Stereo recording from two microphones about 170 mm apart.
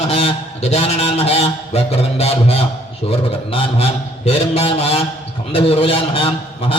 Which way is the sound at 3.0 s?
35° left (ahead or behind).